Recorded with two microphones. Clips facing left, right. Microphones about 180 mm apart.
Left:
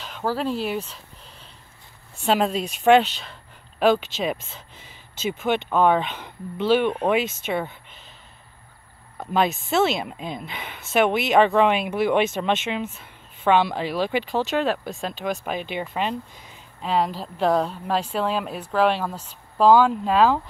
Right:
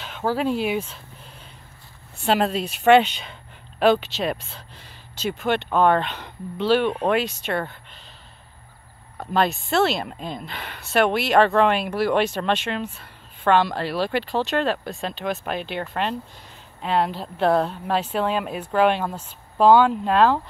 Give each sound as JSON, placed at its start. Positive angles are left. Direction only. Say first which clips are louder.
{"t": 0.0, "sound": "speech", "louder": "right 2 dB", "side_deg": 0}
{"t": 0.7, "sound": "a sound", "louder": "right 3 dB", "side_deg": -5}
{"t": 2.2, "sound": "speech", "louder": "even", "side_deg": 0}
{"t": 6.6, "sound": "speech", "louder": "even", "side_deg": 15}
{"t": 7.0, "sound": "speech", "louder": "even", "side_deg": 0}
{"t": 9.2, "sound": "speech", "louder": "even", "side_deg": 0}
{"t": 11.0, "sound": "speech", "louder": "even", "side_deg": 15}
{"t": 11.5, "sound": "speech", "louder": "even", "side_deg": 0}
{"t": 12.0, "sound": "speech", "louder": "left 1 dB", "side_deg": 15}
{"t": 12.7, "sound": "a sound", "louder": "even", "side_deg": 0}
{"t": 13.5, "sound": "speech", "louder": "even", "side_deg": 10}